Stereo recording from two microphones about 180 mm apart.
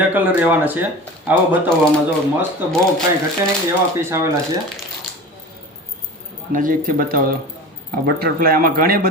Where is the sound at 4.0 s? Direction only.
15° right (ahead or behind).